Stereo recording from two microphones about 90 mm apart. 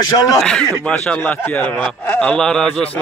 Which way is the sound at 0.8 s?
10° left (ahead or behind).